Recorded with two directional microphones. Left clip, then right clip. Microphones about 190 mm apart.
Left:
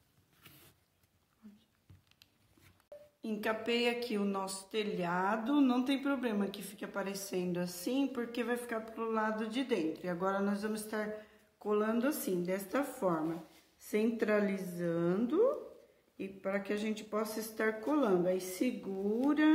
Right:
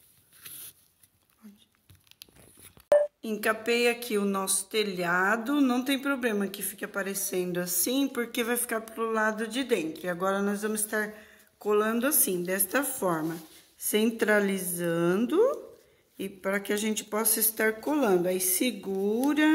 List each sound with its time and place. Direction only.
3.2 s speech: 45° right (ahead or behind)